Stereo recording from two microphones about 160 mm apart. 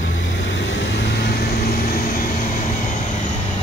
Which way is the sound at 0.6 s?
90° left.